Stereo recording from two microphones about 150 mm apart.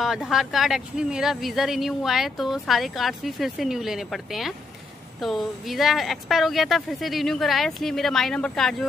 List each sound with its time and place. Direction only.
0.0 s speech: centre (ahead or behind)